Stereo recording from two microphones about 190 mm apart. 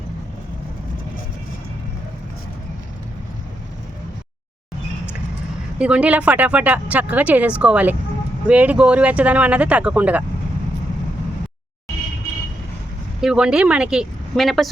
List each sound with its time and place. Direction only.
5.8 s speech: 5° right (ahead or behind)
13.2 s speech: 5° right (ahead or behind)